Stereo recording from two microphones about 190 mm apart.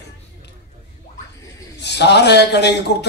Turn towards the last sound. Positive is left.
turn(degrees=60)  # may be behind; listen again after turning